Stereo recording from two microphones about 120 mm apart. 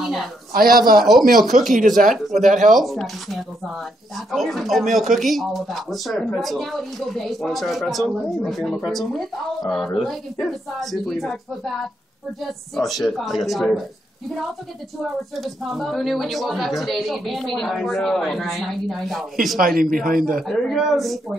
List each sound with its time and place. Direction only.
0.0 s a sound: centre (ahead or behind)
1.0 s a woman's voice: centre (ahead or behind)
2.0 s speech: 90° right
2.7 s a woman's voice: centre (ahead or behind)
15.3 s a woman's voice: centre (ahead or behind)